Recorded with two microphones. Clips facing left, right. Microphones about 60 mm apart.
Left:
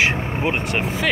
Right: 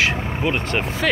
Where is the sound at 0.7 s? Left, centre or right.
Centre.